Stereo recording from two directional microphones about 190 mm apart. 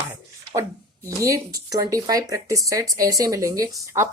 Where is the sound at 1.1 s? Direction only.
15° right (ahead or behind).